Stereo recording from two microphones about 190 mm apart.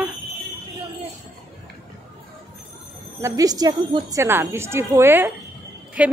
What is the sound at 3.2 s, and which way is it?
A woman's voice, 20° right (ahead or behind).